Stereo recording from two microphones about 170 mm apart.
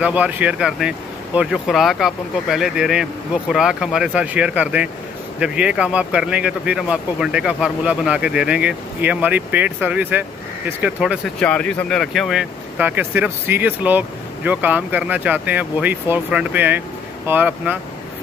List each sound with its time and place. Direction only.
0.0 s speech: 10° right (ahead or behind)
11.3 s speech: 5° left (ahead or behind); by 17.7 s 10° right (ahead or behind)